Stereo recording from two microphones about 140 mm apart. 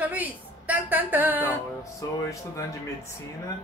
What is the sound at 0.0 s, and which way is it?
A woman's voice, 10° right (ahead or behind).